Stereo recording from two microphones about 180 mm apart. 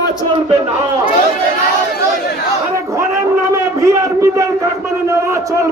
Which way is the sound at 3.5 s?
15° right (ahead or behind).